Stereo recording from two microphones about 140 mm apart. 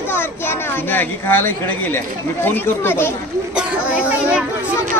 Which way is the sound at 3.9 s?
10° right (ahead or behind).